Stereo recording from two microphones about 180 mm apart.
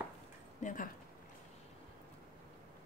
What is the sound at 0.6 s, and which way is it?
Speech, 45° left (ahead or behind).